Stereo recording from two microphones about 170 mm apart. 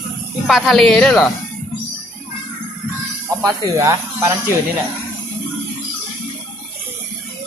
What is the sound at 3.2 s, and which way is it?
Speech, 20° right (ahead or behind).